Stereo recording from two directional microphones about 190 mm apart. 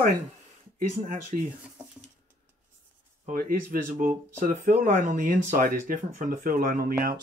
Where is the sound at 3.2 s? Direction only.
45° right (ahead or behind).